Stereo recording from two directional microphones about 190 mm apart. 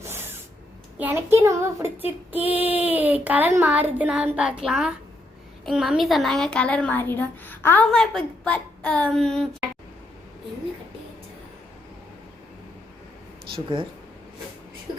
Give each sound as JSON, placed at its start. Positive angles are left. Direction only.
{"t": 0.1, "sound": "a sound", "side_deg": -10}
{"t": 0.9, "sound": "child singing", "side_deg": -10}
{"t": 5.6, "sound": "a woman's voice", "side_deg": 0}
{"t": 13.5, "sound": "speech", "side_deg": -25}